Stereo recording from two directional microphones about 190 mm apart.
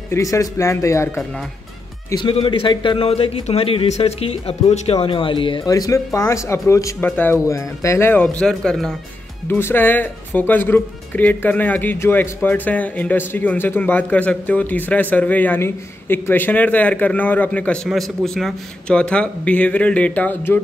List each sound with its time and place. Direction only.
0.1 s speech: 15° left (ahead or behind)
2.0 s a man's voice: 25° left (ahead or behind); by 20.6 s 10° left (ahead or behind)